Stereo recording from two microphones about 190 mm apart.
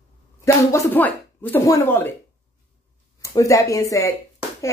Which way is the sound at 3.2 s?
15° left (ahead or behind).